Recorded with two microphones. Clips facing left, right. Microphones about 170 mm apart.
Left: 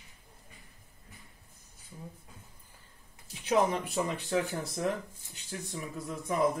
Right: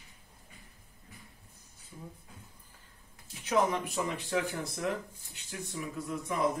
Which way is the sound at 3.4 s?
30° left (ahead or behind).